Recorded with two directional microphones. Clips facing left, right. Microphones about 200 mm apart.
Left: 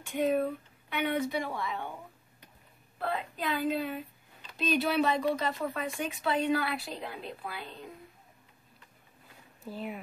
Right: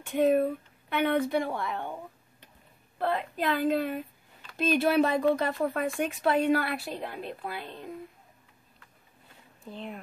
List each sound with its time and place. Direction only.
0.3 s speech: 50° right (ahead or behind)
3.0 s speech: 60° right (ahead or behind)
9.6 s speech: 5° left (ahead or behind)